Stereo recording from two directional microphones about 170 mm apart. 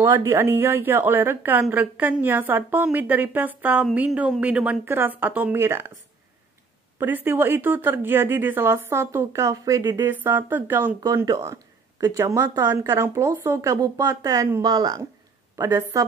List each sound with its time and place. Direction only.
0.0 s a woman's voice: 15° right (ahead or behind)
7.0 s a woman's voice: 10° right (ahead or behind)
11.0 s speech: 20° right (ahead or behind)